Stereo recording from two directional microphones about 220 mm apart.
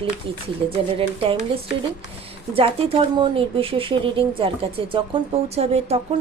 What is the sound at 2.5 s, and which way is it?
Speech, 25° right (ahead or behind).